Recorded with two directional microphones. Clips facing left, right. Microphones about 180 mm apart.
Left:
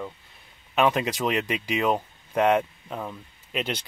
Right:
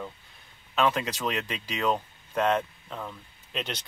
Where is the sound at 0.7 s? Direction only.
15° left (ahead or behind).